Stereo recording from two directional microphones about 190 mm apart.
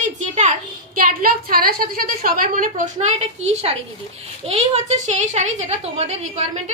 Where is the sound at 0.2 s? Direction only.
40° right (ahead or behind).